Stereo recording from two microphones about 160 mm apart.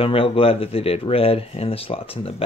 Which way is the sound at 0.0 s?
35° left (ahead or behind).